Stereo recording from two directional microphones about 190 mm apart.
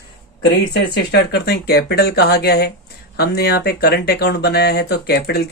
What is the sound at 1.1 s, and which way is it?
Speech, 60° left (ahead or behind).